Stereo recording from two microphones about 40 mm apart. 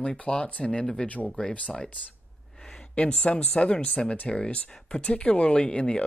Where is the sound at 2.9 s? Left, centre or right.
Left.